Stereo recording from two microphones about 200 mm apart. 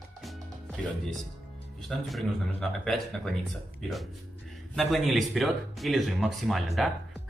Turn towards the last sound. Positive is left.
turn(degrees=0)  # may be behind; listen again after turning